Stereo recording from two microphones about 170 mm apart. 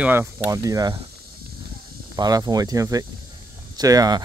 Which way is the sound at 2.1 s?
25° right (ahead or behind).